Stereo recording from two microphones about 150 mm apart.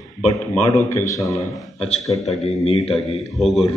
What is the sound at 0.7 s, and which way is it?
Speech, 20° left (ahead or behind).